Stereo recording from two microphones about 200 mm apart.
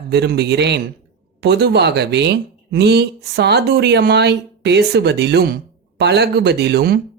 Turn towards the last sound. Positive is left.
turn(degrees=-55)  # may be behind; listen again after turning